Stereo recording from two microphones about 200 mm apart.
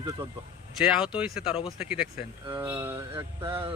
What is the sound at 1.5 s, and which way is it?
Speech, 25° left (ahead or behind).